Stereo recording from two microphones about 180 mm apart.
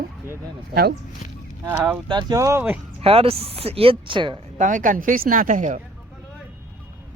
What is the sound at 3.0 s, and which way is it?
Speech, 30° right (ahead or behind).